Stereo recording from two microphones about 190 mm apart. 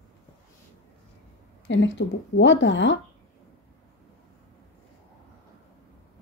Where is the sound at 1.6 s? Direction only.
75° left (ahead or behind).